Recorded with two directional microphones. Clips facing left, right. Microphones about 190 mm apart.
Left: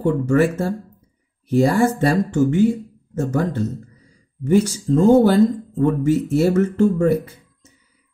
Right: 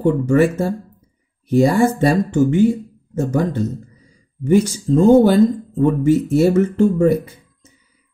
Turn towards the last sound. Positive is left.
turn(degrees=-15)  # may be behind; listen again after turning